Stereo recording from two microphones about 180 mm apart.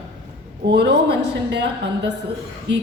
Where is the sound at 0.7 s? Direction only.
65° right (ahead or behind).